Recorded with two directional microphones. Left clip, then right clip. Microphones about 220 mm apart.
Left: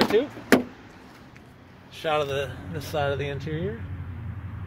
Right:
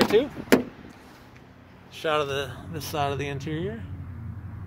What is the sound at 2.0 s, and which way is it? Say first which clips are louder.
Speech: even; 10° right (ahead or behind).